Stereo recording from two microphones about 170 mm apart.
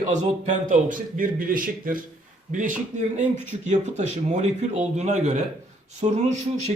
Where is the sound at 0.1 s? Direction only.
45° right (ahead or behind).